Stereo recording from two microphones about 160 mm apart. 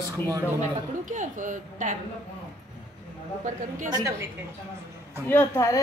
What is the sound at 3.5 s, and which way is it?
Speech, 50° right (ahead or behind).